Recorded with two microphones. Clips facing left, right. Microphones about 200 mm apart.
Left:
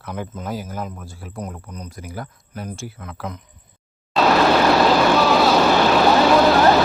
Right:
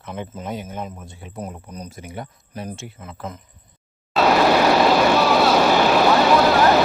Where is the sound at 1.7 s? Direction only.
10° right (ahead or behind).